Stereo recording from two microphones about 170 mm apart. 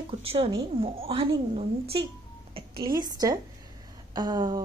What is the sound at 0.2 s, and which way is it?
A woman's voice, 35° right (ahead or behind).